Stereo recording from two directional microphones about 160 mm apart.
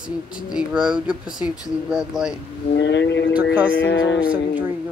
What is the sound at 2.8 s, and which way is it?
Speech, 90° left.